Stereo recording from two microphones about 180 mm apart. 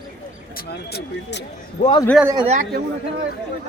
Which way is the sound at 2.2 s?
25° right (ahead or behind).